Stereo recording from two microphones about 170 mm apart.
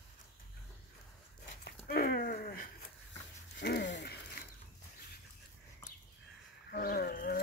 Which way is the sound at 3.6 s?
80° left.